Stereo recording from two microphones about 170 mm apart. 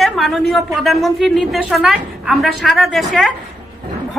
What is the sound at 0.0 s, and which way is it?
A woman's voice, centre (ahead or behind).